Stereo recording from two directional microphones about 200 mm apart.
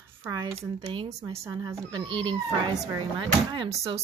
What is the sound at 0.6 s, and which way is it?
Speech, 30° right (ahead or behind).